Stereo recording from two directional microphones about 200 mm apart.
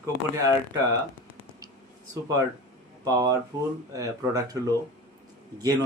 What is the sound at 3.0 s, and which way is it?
Speech, 20° right (ahead or behind).